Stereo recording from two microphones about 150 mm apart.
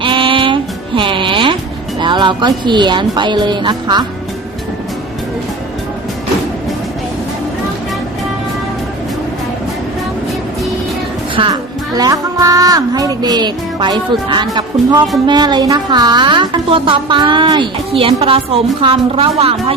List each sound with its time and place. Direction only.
0.0 s music: 35° right (ahead or behind)
2.0 s a woman's voice: 30° right (ahead or behind)
11.4 s a woman's voice: 35° right (ahead or behind)
11.9 s music: 25° right (ahead or behind)
15.3 s a woman's voice: 30° right (ahead or behind)